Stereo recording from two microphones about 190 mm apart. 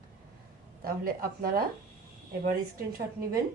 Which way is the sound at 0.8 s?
50° right (ahead or behind).